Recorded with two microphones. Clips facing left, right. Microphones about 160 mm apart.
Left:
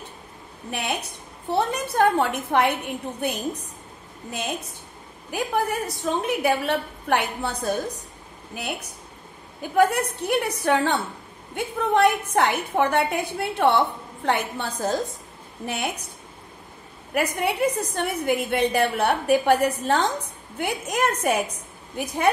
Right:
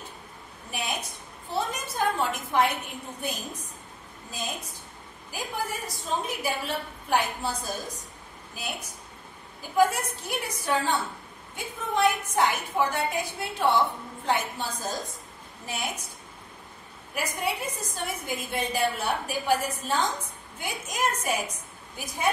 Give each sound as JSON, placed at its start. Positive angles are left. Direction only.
{"t": 0.7, "sound": "a woman's voice", "side_deg": 65}
{"t": 17.1, "sound": "a woman's voice", "side_deg": 65}